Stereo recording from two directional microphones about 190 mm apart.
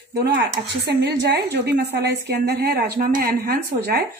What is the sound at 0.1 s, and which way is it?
A woman's voice, 55° right (ahead or behind).